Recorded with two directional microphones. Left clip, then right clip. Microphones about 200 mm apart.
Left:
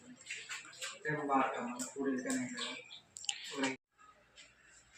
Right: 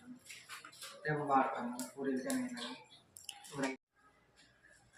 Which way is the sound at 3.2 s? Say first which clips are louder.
Left 11 dB; 20° right (ahead or behind).